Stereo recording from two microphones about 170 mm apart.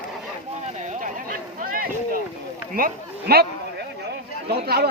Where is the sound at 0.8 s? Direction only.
50° right (ahead or behind).